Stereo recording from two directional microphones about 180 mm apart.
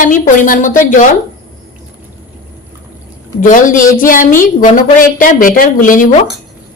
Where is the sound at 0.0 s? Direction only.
50° left (ahead or behind).